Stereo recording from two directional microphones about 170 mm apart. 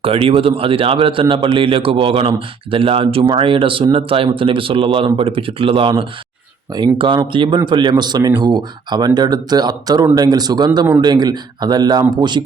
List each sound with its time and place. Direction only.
0.0 s a man's voice: 35° right (ahead or behind)